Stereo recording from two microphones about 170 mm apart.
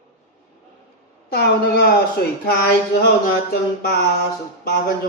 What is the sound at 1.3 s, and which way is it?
Speech, 65° left (ahead or behind).